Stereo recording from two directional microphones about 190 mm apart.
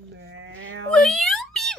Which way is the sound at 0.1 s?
90° right.